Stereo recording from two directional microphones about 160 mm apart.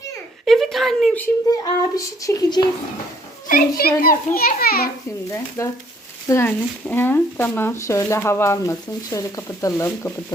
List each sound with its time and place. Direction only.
0.4 s a sound: centre (ahead or behind)
1.5 s a child's voice: 20° left (ahead or behind)
3.5 s a child's voice: 65° left (ahead or behind)
5.6 s a child's voice: 20° left (ahead or behind)